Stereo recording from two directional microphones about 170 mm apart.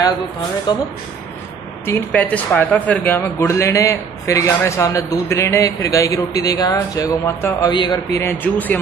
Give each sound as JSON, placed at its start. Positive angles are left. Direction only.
{"t": 0.7, "sound": "speech", "side_deg": 25}
{"t": 1.9, "sound": "speech", "side_deg": 10}